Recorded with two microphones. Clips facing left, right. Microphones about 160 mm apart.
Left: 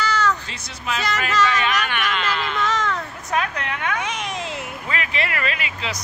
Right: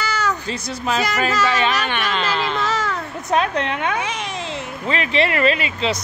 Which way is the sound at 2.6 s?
5° right (ahead or behind).